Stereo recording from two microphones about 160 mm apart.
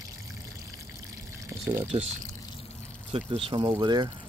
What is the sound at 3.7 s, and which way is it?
Speech, 25° right (ahead or behind).